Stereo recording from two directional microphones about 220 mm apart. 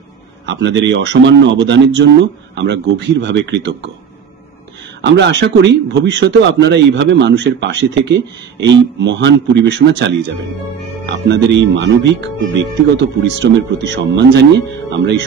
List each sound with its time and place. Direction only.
0.5 s a man's voice: 55° right (ahead or behind)
5.0 s a man's voice: 50° right (ahead or behind)